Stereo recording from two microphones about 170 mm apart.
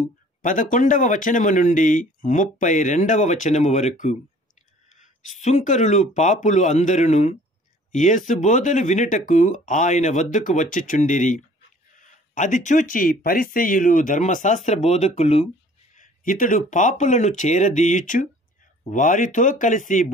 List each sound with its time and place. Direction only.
0.4 s speech: 50° left (ahead or behind)
5.4 s speech: 45° left (ahead or behind)
16.0 s speech: 50° left (ahead or behind)